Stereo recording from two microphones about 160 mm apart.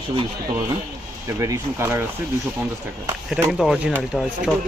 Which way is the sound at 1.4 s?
20° right (ahead or behind).